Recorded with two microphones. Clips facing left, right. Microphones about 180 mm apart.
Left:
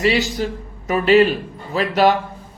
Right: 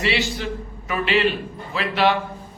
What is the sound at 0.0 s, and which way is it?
A man's voice, 40° left (ahead or behind).